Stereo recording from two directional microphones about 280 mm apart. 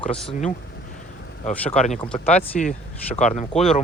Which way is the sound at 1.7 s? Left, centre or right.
Left.